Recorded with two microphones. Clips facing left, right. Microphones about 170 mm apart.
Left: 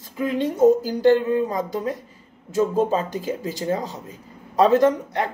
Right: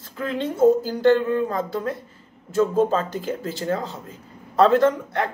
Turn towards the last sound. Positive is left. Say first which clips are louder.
# left 1 dB
turn(degrees=15)  # may be behind; listen again after turning